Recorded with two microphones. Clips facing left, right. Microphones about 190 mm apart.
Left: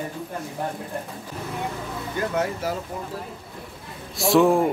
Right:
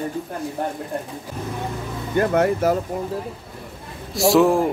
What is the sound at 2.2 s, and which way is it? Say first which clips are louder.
Speech: right 8 dB; 60° right (ahead or behind).